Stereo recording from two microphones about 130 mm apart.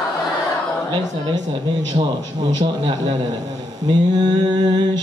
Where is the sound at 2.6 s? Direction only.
35° right (ahead or behind).